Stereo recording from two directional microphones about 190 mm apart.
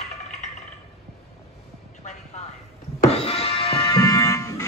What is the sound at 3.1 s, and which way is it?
Music, 30° left (ahead or behind).